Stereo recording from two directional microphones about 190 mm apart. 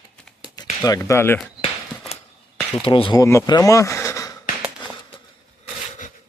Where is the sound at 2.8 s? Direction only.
25° left (ahead or behind).